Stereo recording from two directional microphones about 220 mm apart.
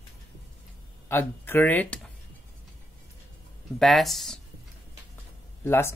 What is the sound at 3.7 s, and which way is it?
Speech, centre (ahead or behind).